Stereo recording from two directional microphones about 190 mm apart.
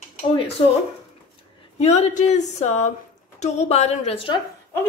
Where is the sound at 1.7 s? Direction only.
35° left (ahead or behind).